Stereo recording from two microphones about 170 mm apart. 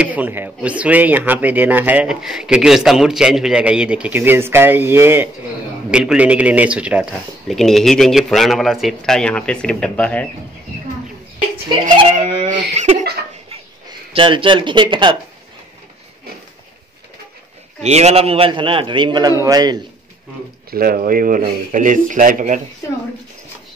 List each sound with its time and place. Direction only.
0.0 s a man's voice: 10° right (ahead or behind); by 10.2 s 5° left (ahead or behind)
11.8 s giggle: 45° right (ahead or behind)
14.1 s speech: 30° right (ahead or behind)
17.8 s a man's voice: 40° right (ahead or behind); by 19.8 s 25° right (ahead or behind)
20.7 s speech: 60° right (ahead or behind)
22.8 s speech: 15° left (ahead or behind)